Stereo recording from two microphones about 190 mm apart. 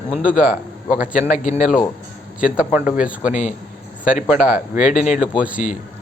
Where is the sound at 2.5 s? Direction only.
5° right (ahead or behind).